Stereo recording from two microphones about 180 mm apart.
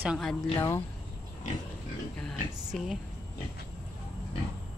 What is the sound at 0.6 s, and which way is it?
Speech, 15° left (ahead or behind).